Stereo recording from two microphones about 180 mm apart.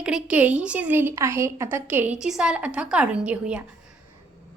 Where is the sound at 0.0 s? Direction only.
5° right (ahead or behind).